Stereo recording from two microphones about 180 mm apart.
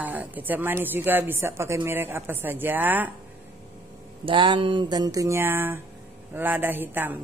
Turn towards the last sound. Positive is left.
turn(degrees=-10)  # may be behind; listen again after turning